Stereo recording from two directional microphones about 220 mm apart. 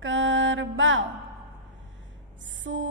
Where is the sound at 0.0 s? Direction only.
60° right (ahead or behind).